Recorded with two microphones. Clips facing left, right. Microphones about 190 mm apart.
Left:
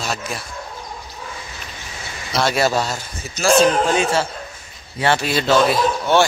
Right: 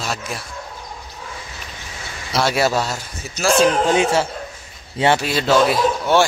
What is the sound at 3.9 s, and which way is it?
Speech, 15° right (ahead or behind).